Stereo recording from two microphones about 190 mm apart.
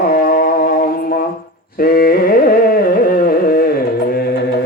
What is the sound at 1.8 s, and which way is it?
Carnatic music, 50° left (ahead or behind).